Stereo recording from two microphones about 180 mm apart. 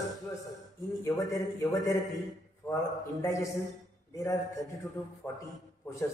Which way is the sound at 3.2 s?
15° left (ahead or behind).